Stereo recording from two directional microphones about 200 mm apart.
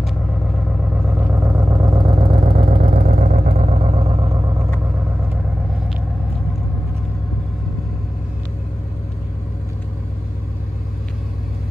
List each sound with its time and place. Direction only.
1.2 s vehicle: 15° right (ahead or behind)